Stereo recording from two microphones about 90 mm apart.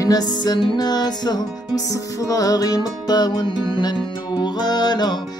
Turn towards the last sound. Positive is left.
turn(degrees=50)  # may be behind; listen again after turning